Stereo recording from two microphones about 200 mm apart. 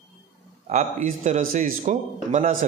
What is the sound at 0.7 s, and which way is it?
Speech, 40° right (ahead or behind).